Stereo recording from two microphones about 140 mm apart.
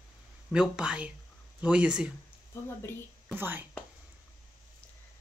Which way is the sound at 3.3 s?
15° right (ahead or behind).